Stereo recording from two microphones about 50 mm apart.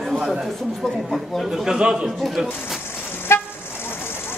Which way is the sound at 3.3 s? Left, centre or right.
Left.